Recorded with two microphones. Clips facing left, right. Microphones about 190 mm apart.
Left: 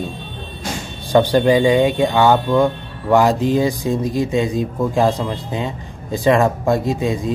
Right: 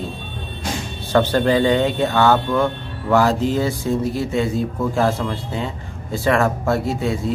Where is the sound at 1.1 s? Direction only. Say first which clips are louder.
Left 3 dB; 15° left (ahead or behind).